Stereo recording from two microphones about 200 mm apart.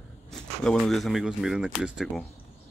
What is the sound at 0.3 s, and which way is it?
Speech, centre (ahead or behind).